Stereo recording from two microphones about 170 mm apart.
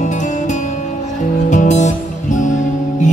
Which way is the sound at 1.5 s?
45° left (ahead or behind).